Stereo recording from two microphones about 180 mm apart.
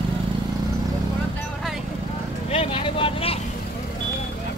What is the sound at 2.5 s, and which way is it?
Vehicle, 30° left (ahead or behind).